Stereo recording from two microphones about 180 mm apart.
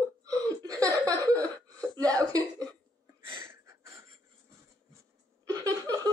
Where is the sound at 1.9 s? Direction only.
20° right (ahead or behind).